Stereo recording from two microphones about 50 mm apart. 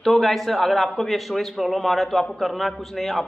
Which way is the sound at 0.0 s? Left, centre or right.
Centre.